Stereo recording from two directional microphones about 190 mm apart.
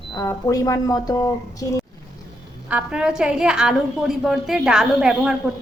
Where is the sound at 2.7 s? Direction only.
5° right (ahead or behind).